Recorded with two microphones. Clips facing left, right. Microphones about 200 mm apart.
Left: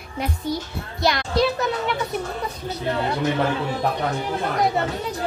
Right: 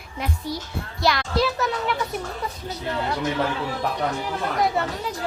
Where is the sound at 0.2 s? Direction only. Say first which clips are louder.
Left 3 dB; centre (ahead or behind).